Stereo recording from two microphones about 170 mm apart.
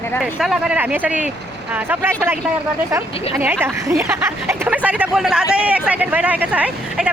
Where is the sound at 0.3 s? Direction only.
5° right (ahead or behind).